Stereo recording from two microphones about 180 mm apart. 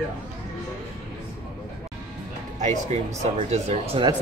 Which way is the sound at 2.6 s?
40° right (ahead or behind).